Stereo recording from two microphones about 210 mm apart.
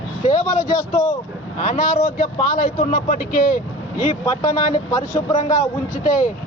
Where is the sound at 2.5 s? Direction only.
40° left (ahead or behind).